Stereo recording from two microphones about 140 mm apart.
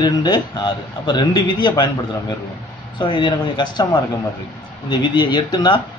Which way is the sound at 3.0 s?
35° left (ahead or behind).